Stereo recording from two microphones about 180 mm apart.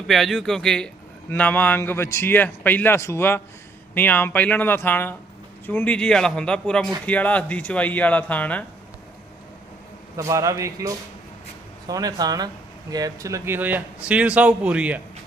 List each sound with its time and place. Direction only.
0.1 s a man's voice: centre (ahead or behind)
10.2 s speech: 15° right (ahead or behind)